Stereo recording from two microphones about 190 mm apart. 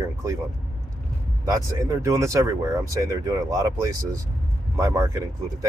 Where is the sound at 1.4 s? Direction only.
15° right (ahead or behind).